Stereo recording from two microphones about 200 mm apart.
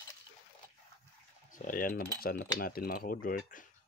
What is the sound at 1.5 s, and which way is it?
Speech, 45° left (ahead or behind).